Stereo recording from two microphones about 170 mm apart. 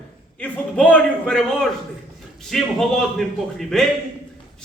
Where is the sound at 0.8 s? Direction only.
10° left (ahead or behind).